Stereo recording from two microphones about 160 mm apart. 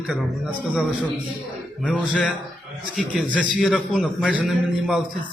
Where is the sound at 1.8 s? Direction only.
5° left (ahead or behind).